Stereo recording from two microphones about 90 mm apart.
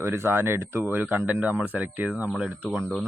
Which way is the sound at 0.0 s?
30° right (ahead or behind).